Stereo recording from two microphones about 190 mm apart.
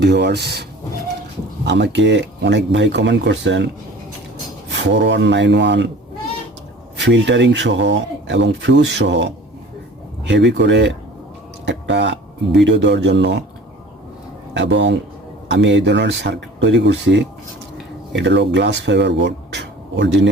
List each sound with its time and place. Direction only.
0.0 s speech: 65° right (ahead or behind)
1.6 s speech: 65° right (ahead or behind)
4.7 s speech: 65° right (ahead or behind)
7.0 s speech: 70° right (ahead or behind)
11.6 s a sound: 65° right (ahead or behind)
12.6 s speech: 65° right (ahead or behind)
14.5 s speech: 70° right (ahead or behind)